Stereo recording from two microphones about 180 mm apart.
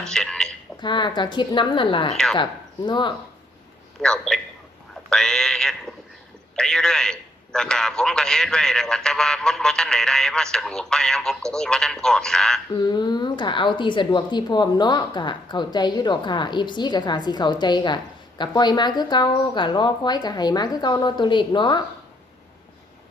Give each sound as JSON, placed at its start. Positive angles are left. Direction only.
{"t": 0.0, "sound": "a sound", "side_deg": 5}
{"t": 0.8, "sound": "a woman's voice", "side_deg": 25}
{"t": 4.0, "sound": "a man's voice", "side_deg": 5}
{"t": 12.7, "sound": "a woman's voice", "side_deg": 20}